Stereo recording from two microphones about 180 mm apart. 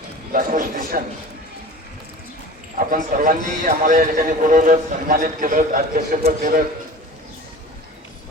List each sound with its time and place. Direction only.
0.3 s a man's voice: 50° right (ahead or behind)
2.7 s a man's voice: 50° right (ahead or behind)